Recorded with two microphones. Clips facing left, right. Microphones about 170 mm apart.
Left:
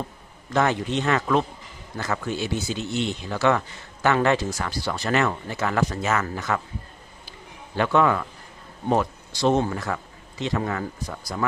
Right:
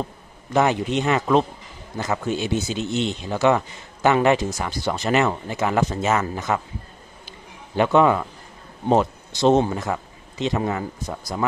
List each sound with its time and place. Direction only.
0.5 s a man's voice: 15° right (ahead or behind)
7.2 s a sound: 20° right (ahead or behind)
8.8 s speech: 25° right (ahead or behind)